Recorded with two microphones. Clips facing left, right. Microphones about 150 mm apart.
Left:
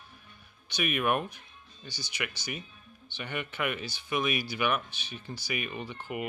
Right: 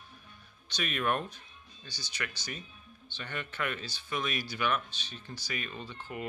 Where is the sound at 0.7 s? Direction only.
10° left (ahead or behind).